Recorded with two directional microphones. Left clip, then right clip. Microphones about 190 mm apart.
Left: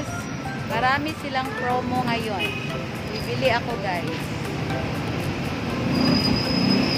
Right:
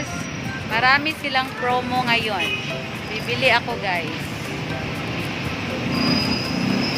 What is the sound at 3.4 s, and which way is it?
Speech, 20° right (ahead or behind).